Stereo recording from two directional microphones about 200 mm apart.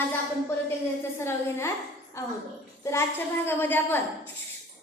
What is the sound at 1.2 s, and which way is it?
A woman's voice, 15° left (ahead or behind).